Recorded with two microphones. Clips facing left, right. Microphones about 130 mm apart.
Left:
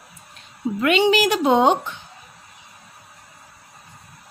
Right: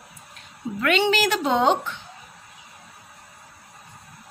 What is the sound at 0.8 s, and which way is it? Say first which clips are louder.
A woman's voice: left 3 dB; 15° left (ahead or behind).